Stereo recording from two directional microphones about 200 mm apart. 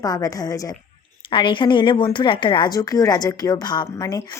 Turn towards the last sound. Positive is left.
turn(degrees=15)  # may be behind; listen again after turning